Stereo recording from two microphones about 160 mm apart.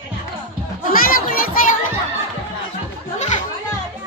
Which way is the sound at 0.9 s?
65° left (ahead or behind).